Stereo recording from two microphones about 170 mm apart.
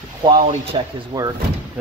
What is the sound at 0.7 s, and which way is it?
Speech, 20° right (ahead or behind).